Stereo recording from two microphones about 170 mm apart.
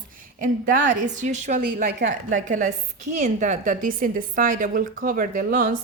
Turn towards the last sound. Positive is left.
turn(degrees=-55)  # may be behind; listen again after turning